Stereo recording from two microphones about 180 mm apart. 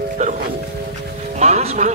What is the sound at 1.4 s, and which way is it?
Speech, 40° right (ahead or behind).